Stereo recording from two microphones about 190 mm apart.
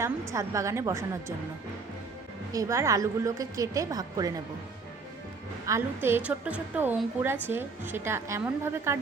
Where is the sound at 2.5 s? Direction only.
15° right (ahead or behind).